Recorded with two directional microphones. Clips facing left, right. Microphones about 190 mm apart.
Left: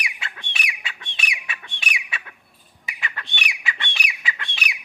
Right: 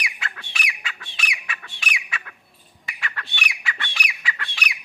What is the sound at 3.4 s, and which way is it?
Squawk, 20° left (ahead or behind).